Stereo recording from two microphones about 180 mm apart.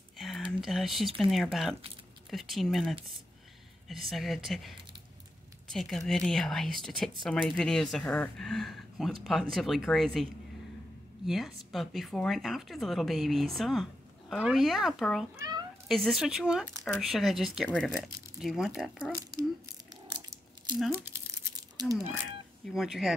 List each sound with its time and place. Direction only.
0.5 s speech: centre (ahead or behind)
11.2 s speech: centre (ahead or behind)
15.3 s speech: 20° right (ahead or behind)
15.9 s speech: centre (ahead or behind)
20.1 s a sound: 25° right (ahead or behind)
20.9 s crumpling: 15° right (ahead or behind)
22.7 s speech: centre (ahead or behind)